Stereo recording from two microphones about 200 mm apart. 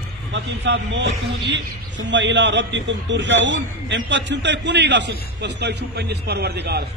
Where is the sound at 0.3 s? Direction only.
65° right (ahead or behind).